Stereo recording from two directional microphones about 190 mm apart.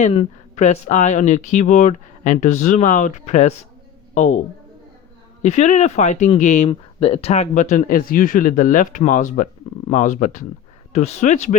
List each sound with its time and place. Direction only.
0.0 s a man's voice: 35° left (ahead or behind)
5.4 s speech: 35° left (ahead or behind)